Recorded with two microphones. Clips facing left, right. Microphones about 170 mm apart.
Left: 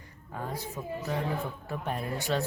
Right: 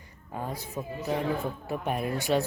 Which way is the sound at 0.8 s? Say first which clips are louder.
Right 4 dB; 15° right (ahead or behind).